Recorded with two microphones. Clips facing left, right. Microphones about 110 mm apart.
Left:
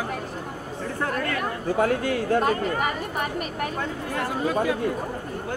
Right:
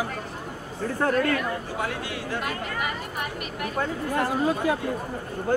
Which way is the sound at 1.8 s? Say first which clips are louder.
Left 8 dB; 45° left (ahead or behind).